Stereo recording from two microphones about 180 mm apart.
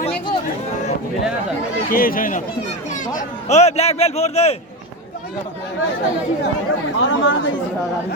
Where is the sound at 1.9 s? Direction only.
50° left (ahead or behind); by 4.6 s 35° left (ahead or behind).